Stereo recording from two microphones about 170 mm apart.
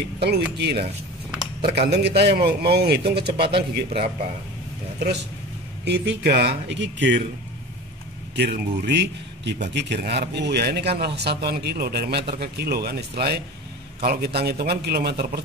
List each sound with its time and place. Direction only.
0.2 s a man's voice: 75° right (ahead or behind)
5.9 s speech: 75° right (ahead or behind)
8.4 s a man's voice: 75° right (ahead or behind)